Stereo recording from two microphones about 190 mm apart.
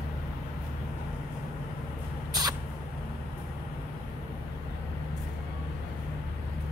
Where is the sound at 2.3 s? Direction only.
20° right (ahead or behind).